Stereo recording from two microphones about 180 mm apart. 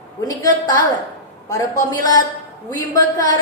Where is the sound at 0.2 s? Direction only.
20° left (ahead or behind).